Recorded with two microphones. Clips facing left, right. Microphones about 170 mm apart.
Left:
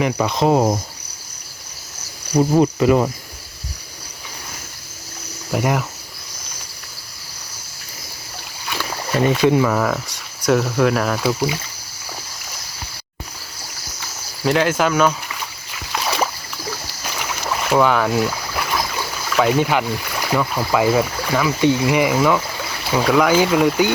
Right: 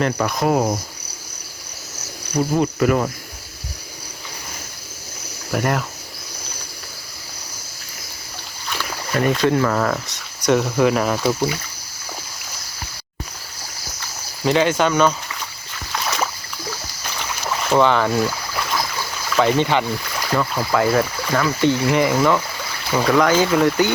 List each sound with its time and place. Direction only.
0.3 s cricket: 25° left (ahead or behind)
2.3 s cricket: 35° left (ahead or behind)
2.7 s cricket: 20° left (ahead or behind)
5.5 s speech: 15° left (ahead or behind)
8.7 s speech: 15° left (ahead or behind); by 11.2 s centre (ahead or behind)
14.4 s speech: centre (ahead or behind)
15.9 s rowboat: 10° left (ahead or behind)
17.2 s speech: 5° left (ahead or behind)